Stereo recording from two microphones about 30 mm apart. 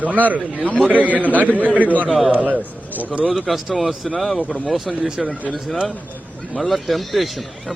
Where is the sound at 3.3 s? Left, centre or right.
Centre.